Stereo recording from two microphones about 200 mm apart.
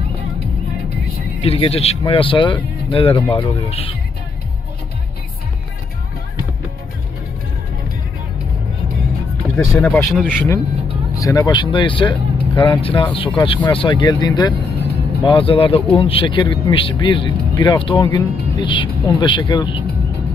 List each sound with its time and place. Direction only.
1.4 s speech: 30° left (ahead or behind)
9.7 s speech: 10° left (ahead or behind)